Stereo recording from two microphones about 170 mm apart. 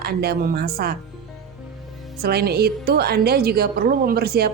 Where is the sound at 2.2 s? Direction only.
70° right (ahead or behind).